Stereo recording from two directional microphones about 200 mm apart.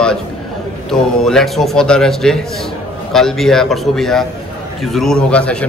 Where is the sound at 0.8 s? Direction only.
Centre (ahead or behind).